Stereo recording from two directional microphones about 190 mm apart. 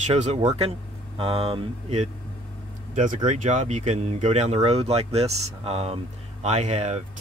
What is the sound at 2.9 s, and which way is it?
Speech, 40° right (ahead or behind).